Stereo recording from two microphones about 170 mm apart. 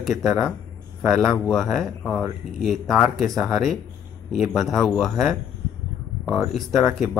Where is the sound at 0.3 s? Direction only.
Centre (ahead or behind).